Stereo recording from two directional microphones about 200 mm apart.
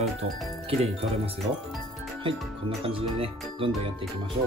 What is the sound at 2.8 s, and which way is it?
Speech, 25° right (ahead or behind).